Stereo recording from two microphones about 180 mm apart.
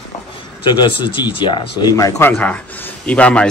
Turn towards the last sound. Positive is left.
turn(degrees=5)  # may be behind; listen again after turning